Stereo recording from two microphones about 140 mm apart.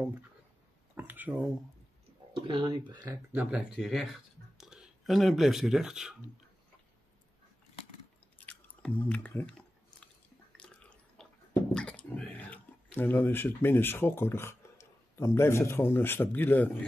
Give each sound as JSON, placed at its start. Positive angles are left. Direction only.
{"t": 0.9, "sound": "a sound", "side_deg": -15}
{"t": 2.3, "sound": "speech", "side_deg": -35}
{"t": 3.3, "sound": "speech", "side_deg": -10}
{"t": 8.4, "sound": "chewing", "side_deg": 10}
{"t": 10.6, "sound": "drip", "side_deg": 10}
{"t": 11.7, "sound": "speech", "side_deg": 10}